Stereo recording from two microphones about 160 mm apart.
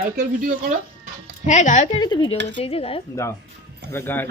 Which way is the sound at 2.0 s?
30° left (ahead or behind).